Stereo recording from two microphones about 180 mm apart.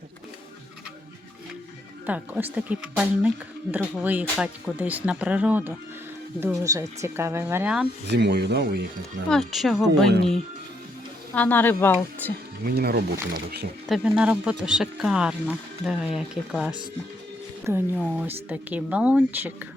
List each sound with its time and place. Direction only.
2.0 s speech: 10° right (ahead or behind)
8.0 s speech: 65° right (ahead or behind)
9.3 s speech: centre (ahead or behind)
11.3 s a woman's voice: 10° left (ahead or behind)
12.6 s speech: 60° right (ahead or behind)
13.8 s speech: 5° right (ahead or behind)